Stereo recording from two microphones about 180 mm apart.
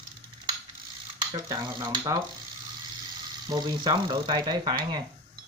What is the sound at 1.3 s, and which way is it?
Speech, 20° right (ahead or behind).